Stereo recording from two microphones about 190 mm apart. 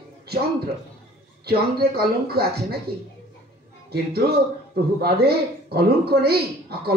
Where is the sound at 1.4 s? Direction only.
55° right (ahead or behind).